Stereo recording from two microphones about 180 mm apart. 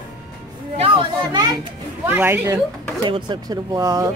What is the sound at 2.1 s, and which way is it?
Speech, 10° right (ahead or behind).